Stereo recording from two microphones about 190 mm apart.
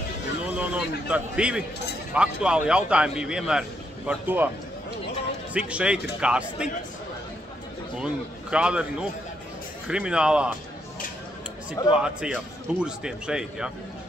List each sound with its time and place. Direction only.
0.6 s a man's voice: 5° right (ahead or behind)
5.5 s a man's voice: 5° right (ahead or behind)
8.0 s a man's voice: 5° right (ahead or behind)
11.9 s a man's voice: 5° right (ahead or behind)